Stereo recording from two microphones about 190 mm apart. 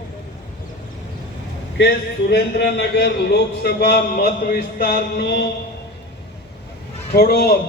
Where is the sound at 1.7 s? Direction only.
60° left (ahead or behind).